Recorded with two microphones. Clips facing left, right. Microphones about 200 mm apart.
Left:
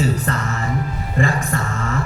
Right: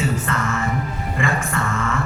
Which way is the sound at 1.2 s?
35° left (ahead or behind).